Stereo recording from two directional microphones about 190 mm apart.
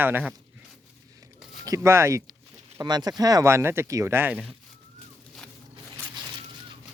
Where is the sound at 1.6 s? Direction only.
15° right (ahead or behind).